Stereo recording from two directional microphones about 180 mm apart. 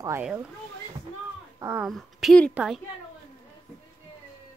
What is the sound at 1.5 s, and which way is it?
Speech, 15° right (ahead or behind).